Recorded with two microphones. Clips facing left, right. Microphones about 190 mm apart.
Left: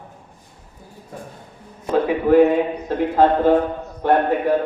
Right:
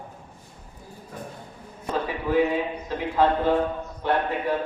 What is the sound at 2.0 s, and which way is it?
A man's voice, 55° left (ahead or behind).